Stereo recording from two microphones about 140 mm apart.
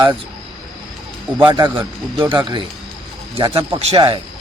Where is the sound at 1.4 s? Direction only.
30° right (ahead or behind).